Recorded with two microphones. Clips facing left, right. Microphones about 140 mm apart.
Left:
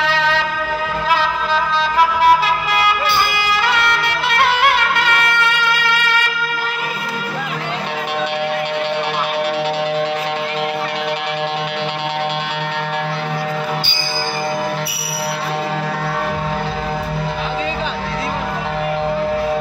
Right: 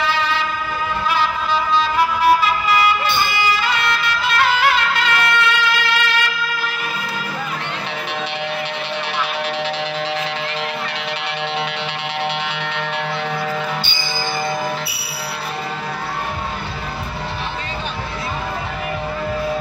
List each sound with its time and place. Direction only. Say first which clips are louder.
0.0 s music: left 2 dB; 90° left; by 5.7 s 55° left (ahead or behind)